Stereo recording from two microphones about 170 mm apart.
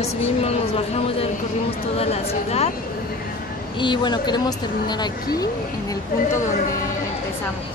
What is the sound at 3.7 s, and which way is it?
Speech, 25° left (ahead or behind).